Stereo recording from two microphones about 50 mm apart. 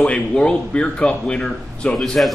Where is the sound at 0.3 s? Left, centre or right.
Centre.